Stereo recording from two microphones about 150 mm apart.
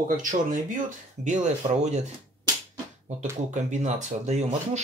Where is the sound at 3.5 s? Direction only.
55° right (ahead or behind).